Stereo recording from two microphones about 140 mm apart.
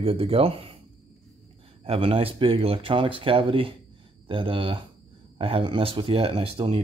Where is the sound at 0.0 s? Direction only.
40° right (ahead or behind).